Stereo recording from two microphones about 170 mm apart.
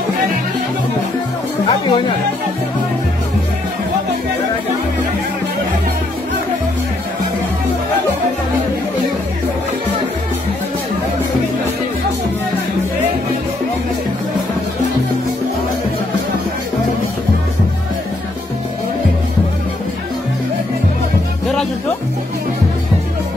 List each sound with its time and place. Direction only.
1.7 s speech: 30° left (ahead or behind)